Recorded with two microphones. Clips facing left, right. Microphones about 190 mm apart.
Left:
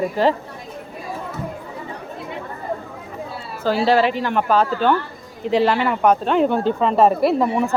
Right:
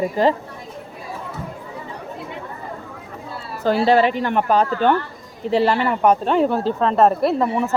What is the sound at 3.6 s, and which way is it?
Speech, centre (ahead or behind).